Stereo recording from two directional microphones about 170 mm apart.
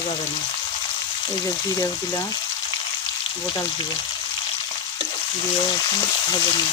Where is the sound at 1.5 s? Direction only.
20° left (ahead or behind).